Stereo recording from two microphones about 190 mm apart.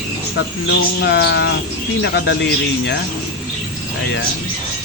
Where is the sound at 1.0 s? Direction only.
60° left (ahead or behind).